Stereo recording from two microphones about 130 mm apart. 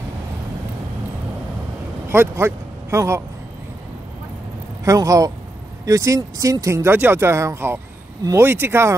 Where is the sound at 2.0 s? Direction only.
20° right (ahead or behind).